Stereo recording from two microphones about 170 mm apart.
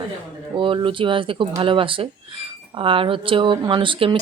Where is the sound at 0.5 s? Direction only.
30° right (ahead or behind).